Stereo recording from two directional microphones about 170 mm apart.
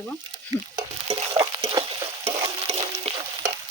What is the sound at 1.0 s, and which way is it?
Stir, 35° right (ahead or behind).